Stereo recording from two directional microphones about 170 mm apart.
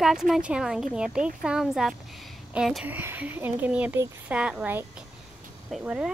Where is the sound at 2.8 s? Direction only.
10° right (ahead or behind).